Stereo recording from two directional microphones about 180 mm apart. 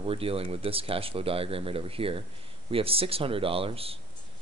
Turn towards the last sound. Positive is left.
turn(degrees=-30)  # may be behind; listen again after turning